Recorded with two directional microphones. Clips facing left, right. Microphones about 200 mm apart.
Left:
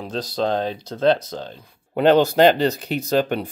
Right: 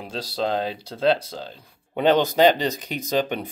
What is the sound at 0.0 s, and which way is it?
Speech, 10° right (ahead or behind).